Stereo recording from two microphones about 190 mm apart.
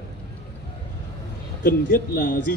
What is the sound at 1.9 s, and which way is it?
Speech, 55° left (ahead or behind).